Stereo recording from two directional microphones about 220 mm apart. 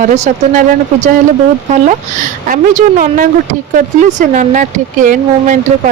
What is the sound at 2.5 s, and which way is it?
Speech, 40° right (ahead or behind).